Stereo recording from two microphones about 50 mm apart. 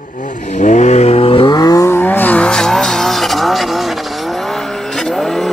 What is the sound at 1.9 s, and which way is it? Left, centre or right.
Vehicle, left.